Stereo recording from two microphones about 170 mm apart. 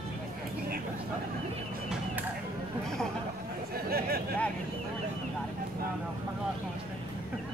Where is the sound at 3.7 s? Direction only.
65° right (ahead or behind).